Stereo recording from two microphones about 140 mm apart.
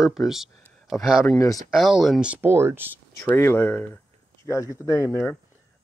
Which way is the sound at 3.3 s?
15° left (ahead or behind).